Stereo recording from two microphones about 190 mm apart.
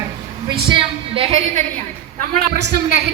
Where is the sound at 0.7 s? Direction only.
30° right (ahead or behind).